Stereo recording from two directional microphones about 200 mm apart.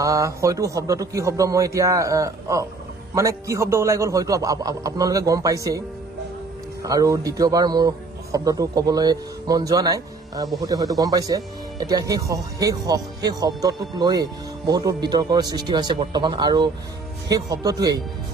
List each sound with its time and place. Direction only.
0.0 s a man's voice: 15° right (ahead or behind)
6.8 s a man's voice: 15° right (ahead or behind)